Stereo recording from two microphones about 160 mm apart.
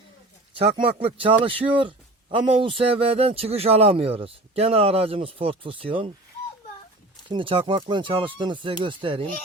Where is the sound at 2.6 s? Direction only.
35° right (ahead or behind).